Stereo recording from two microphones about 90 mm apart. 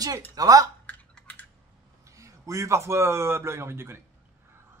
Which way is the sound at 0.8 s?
15° left (ahead or behind).